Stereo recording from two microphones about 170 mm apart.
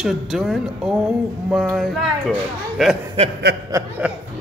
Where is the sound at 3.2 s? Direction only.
35° right (ahead or behind).